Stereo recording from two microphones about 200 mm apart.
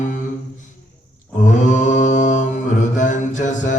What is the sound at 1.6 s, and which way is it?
Mantra, 40° left (ahead or behind).